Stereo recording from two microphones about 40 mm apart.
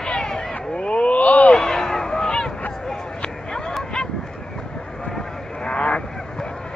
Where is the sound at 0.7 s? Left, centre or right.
Left.